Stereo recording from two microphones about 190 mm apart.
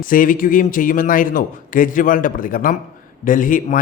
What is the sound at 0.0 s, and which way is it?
A man's voice, 45° left (ahead or behind).